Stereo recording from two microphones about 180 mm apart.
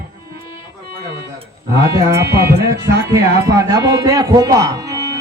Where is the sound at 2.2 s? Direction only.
65° right (ahead or behind).